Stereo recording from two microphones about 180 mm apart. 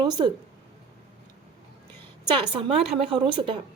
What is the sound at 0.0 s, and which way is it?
Speech, 25° right (ahead or behind).